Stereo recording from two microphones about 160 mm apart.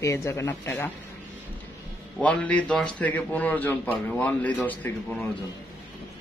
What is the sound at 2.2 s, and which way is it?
A man's voice, 10° left (ahead or behind).